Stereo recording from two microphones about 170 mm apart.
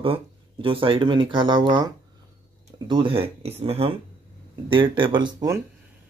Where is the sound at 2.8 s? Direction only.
30° right (ahead or behind).